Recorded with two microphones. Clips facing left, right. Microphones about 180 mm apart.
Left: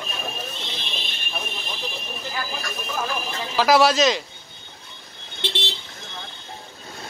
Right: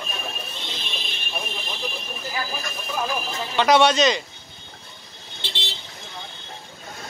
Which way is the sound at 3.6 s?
Centre (ahead or behind).